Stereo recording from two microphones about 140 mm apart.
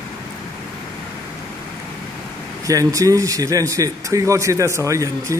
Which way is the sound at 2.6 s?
25° right (ahead or behind).